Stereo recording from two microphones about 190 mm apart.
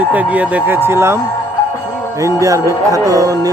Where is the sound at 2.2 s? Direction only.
15° right (ahead or behind).